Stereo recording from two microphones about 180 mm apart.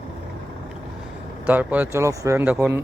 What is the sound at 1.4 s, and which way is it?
Speech, 10° right (ahead or behind).